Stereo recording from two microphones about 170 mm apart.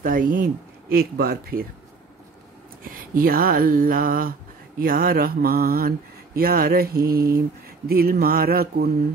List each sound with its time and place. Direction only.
0.0 s speech: 55° right (ahead or behind)
2.8 s speech: 55° right (ahead or behind)